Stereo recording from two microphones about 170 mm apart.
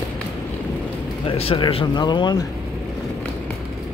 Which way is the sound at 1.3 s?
35° left (ahead or behind).